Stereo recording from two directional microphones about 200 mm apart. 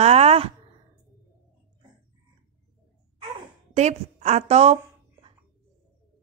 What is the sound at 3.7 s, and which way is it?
A woman's voice, 35° right (ahead or behind).